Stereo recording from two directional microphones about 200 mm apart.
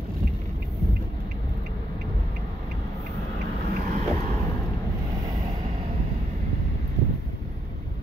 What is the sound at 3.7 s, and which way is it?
Boat, 40° right (ahead or behind).